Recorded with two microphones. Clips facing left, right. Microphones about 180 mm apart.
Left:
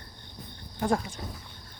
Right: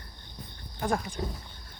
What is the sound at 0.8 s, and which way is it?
Speech, 25° left (ahead or behind).